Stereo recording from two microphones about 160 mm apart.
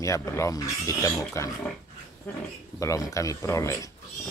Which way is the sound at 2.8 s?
20° left (ahead or behind).